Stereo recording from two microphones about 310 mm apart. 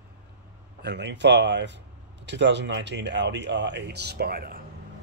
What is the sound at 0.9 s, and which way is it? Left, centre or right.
Speech, right.